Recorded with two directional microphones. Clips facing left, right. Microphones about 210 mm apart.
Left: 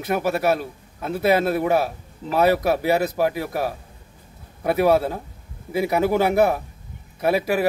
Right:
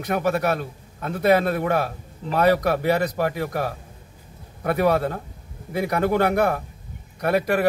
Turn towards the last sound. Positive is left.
turn(degrees=5)  # may be behind; listen again after turning